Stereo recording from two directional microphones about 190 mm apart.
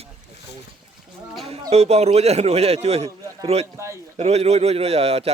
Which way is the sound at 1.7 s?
35° right (ahead or behind).